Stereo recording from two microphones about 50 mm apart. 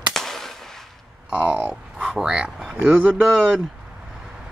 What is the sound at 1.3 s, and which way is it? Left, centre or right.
Speech, right.